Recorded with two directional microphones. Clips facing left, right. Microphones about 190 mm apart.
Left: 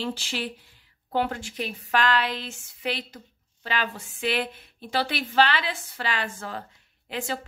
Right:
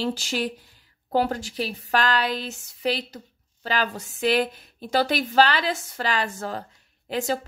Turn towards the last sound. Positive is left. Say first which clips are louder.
# right 5 dB
turn(degrees=-40)  # may be behind; listen again after turning